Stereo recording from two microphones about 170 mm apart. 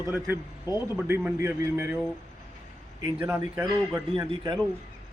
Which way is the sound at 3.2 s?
10° right (ahead or behind).